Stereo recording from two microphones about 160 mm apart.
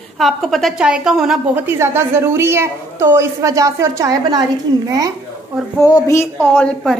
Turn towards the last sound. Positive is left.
turn(degrees=10)  # may be behind; listen again after turning